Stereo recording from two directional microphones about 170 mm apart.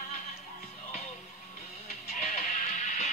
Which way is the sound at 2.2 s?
45° left (ahead or behind).